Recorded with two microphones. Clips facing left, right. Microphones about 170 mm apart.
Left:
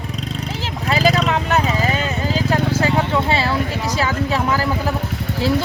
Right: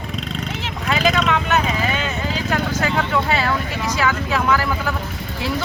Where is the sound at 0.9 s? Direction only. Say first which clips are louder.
Left 2 dB; 35° left (ahead or behind).